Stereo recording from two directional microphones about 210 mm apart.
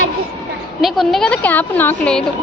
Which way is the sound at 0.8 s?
Centre (ahead or behind).